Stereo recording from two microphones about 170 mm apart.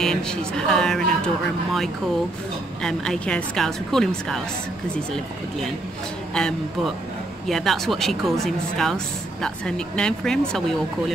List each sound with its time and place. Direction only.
0.0 s speech: 5° left (ahead or behind)
6.3 s speech: 5° left (ahead or behind)